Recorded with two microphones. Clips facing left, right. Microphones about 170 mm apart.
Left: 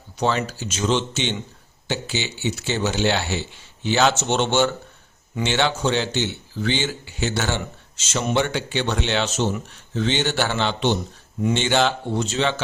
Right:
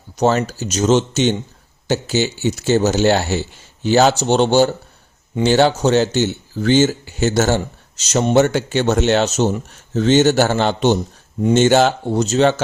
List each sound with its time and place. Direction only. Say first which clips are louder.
0.2 s speech: right 6 dB; 45° right (ahead or behind)